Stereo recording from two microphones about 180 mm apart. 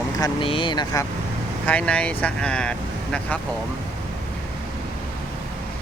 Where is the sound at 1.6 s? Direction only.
5° left (ahead or behind).